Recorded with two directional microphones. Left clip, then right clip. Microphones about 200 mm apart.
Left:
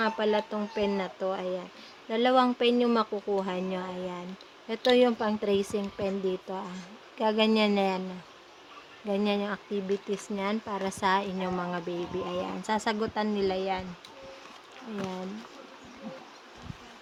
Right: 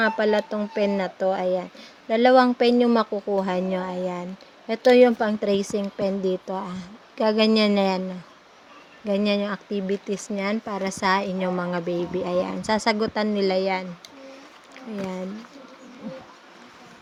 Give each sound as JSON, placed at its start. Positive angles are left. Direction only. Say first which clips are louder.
{"t": 0.0, "sound": "speech", "louder": "right 6 dB", "side_deg": -25}
{"t": 9.0, "sound": "speech", "louder": "right 6 dB", "side_deg": -20}